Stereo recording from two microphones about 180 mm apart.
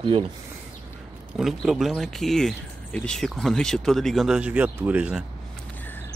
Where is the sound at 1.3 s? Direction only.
Centre (ahead or behind).